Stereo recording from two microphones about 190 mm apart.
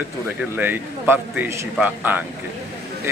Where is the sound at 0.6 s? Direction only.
10° right (ahead or behind).